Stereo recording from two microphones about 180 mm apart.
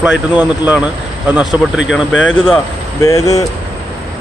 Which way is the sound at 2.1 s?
90° left.